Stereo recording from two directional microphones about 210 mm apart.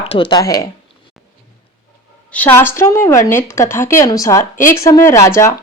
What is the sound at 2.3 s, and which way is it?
A woman's voice, 10° left (ahead or behind).